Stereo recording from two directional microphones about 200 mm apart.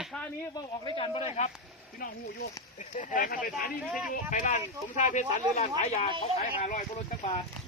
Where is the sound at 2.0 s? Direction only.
45° left (ahead or behind).